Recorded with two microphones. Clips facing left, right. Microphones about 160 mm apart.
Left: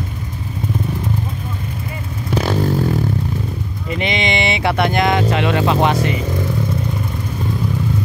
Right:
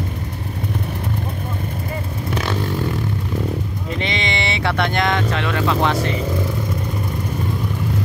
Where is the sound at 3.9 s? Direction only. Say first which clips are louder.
Left 4 dB; 15° left (ahead or behind).